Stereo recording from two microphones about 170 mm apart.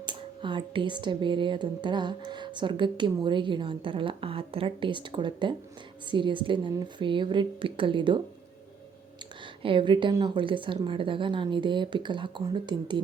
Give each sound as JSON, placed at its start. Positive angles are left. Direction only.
{"t": 0.0, "sound": "speech", "side_deg": -30}
{"t": 9.6, "sound": "speech", "side_deg": -30}